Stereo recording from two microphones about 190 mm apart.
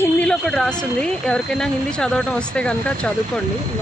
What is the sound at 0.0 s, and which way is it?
A woman's voice, 5° left (ahead or behind).